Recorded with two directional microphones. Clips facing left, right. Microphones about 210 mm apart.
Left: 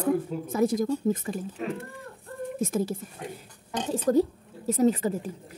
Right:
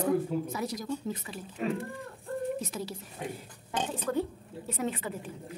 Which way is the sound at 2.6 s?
50° left (ahead or behind).